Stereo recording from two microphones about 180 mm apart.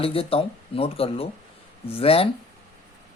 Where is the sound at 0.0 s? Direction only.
30° left (ahead or behind).